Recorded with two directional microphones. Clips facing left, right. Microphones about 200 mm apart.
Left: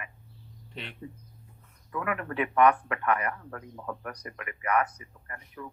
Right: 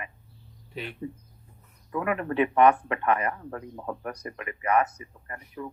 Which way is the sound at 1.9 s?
25° right (ahead or behind).